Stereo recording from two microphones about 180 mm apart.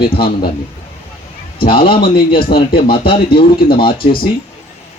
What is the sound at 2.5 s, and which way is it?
Speech, 55° left (ahead or behind).